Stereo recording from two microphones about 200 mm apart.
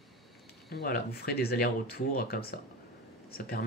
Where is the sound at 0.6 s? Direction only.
50° left (ahead or behind).